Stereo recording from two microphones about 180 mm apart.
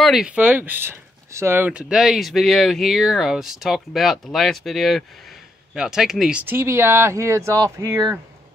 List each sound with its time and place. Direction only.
0.0 s speech: centre (ahead or behind)